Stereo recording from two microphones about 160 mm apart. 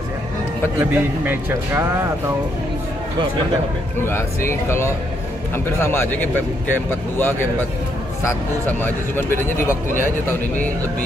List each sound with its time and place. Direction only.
0.7 s speech: 10° right (ahead or behind)
4.0 s speech: 15° left (ahead or behind)